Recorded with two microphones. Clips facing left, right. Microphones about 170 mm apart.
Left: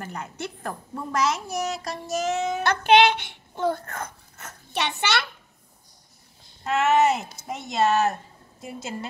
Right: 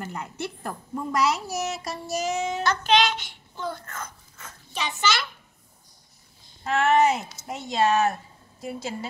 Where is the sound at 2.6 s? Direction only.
60° left (ahead or behind).